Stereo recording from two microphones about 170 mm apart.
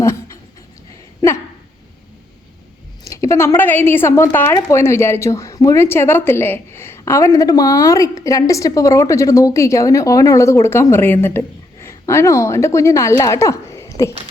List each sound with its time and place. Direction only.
3.0 s a woman's voice: 20° left (ahead or behind)